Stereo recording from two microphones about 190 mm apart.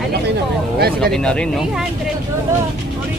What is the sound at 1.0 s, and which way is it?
Speech, 5° left (ahead or behind).